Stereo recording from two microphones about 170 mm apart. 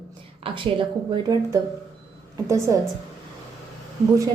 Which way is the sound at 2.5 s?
20° right (ahead or behind).